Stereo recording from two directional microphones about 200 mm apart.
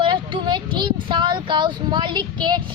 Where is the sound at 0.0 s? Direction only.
25° right (ahead or behind).